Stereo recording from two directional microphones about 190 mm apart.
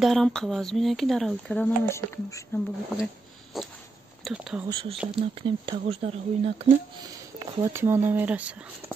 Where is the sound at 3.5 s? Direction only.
Centre (ahead or behind).